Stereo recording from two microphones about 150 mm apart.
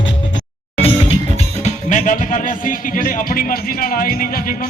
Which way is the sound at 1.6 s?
55° left (ahead or behind).